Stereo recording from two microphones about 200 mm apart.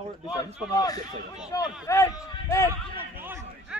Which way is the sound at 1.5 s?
15° left (ahead or behind).